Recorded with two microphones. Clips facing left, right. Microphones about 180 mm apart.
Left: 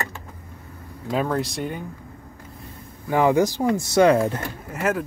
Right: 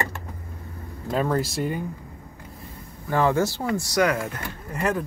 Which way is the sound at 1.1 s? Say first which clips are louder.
Even; centre (ahead or behind).